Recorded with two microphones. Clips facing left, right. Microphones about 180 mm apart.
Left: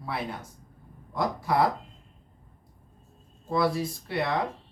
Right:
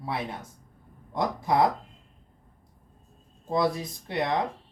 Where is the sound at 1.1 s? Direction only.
20° right (ahead or behind).